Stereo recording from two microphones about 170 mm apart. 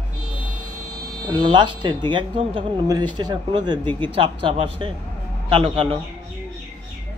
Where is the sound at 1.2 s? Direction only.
25° right (ahead or behind).